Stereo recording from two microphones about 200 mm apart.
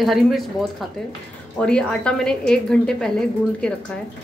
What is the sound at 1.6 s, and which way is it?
Speech, 5° left (ahead or behind).